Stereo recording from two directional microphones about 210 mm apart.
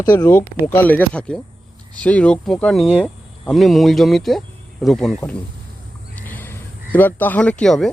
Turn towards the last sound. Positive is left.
turn(degrees=0)  # may be behind; listen again after turning